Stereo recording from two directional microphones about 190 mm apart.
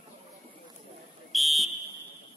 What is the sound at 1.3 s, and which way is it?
Fire alarm, centre (ahead or behind).